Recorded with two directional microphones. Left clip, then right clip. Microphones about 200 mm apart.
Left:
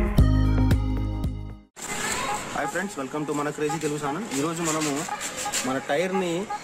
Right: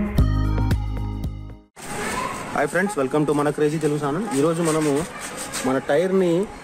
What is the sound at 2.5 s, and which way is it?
Speech, 50° right (ahead or behind).